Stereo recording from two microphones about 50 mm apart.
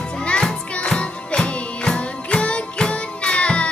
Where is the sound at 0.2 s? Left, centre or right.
Left.